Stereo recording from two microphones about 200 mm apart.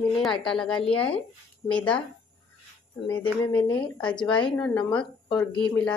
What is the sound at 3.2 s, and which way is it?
A woman's voice, 10° left (ahead or behind).